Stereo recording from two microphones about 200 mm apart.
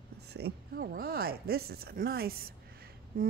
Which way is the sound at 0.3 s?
50° right (ahead or behind).